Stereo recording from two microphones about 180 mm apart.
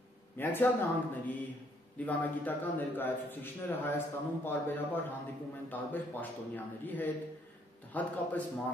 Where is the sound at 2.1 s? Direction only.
10° left (ahead or behind).